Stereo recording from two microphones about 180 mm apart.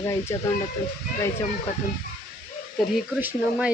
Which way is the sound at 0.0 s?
15° left (ahead or behind).